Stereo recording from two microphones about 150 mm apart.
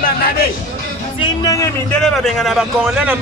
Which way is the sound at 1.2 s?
25° left (ahead or behind).